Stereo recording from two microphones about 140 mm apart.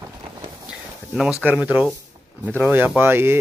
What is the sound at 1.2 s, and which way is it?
Speech, 5° right (ahead or behind).